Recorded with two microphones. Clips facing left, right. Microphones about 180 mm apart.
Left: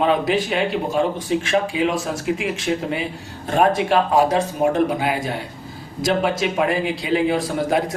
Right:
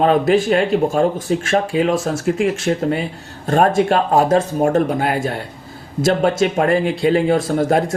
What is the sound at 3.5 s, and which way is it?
Speech, 45° right (ahead or behind).